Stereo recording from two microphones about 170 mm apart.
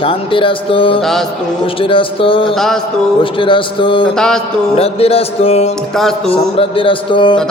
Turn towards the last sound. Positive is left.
turn(degrees=30)  # may be behind; listen again after turning